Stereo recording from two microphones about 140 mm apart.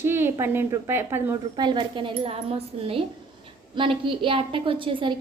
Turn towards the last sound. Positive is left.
turn(degrees=-35)  # may be behind; listen again after turning